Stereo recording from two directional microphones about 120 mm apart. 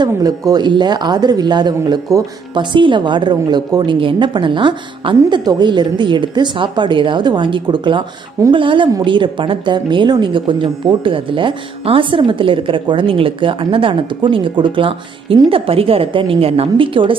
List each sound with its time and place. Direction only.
0.0 s a woman's voice: 30° right (ahead or behind); by 17.2 s 45° right (ahead or behind)